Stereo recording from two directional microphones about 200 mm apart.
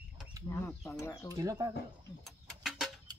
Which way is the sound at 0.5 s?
15° left (ahead or behind).